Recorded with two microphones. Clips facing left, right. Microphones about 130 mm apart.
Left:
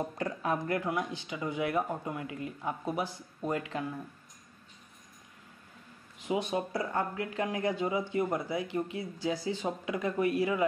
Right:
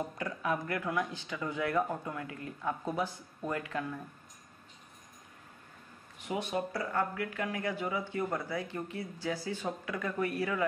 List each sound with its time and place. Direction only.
0.2 s speech: 30° left (ahead or behind)
6.2 s speech: 15° left (ahead or behind)